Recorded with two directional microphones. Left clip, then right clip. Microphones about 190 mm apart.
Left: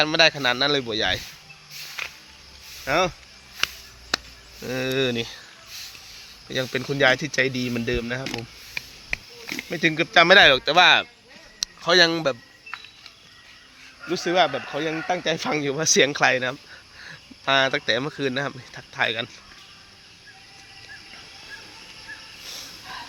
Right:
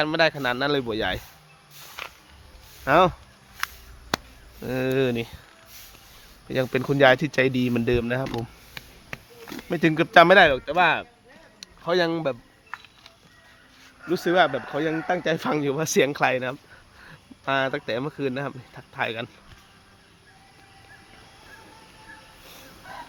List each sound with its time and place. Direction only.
0.0 s speech: 10° right (ahead or behind)
2.8 s speech: 35° right (ahead or behind)
4.1 s chop: 45° right (ahead or behind)
4.6 s speech: 20° right (ahead or behind)
6.5 s speech: 25° right (ahead or behind)
10.2 s speech: 10° right (ahead or behind)
10.5 s speech: centre (ahead or behind)
11.8 s a sound: 10° right (ahead or behind)
14.1 s speech: 30° right (ahead or behind); by 19.3 s 10° right (ahead or behind)